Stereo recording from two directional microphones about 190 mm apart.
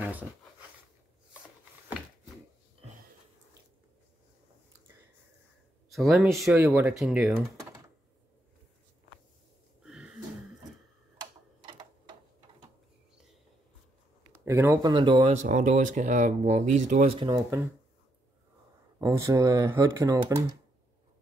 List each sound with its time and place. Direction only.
0.0 s a sound: 10° right (ahead or behind)
5.9 s speech: centre (ahead or behind)
9.8 s a sound: 5° right (ahead or behind)
14.4 s speech: 15° right (ahead or behind)
15.3 s speech: 40° right (ahead or behind)
18.9 s speech: 15° right (ahead or behind)